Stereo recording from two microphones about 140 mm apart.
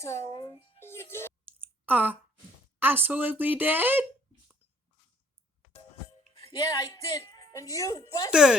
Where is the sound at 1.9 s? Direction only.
10° right (ahead or behind).